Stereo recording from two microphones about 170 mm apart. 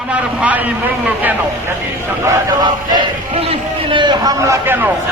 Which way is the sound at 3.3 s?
35° right (ahead or behind).